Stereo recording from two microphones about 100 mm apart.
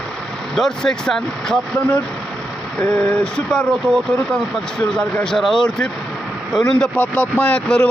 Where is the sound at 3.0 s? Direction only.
10° left (ahead or behind).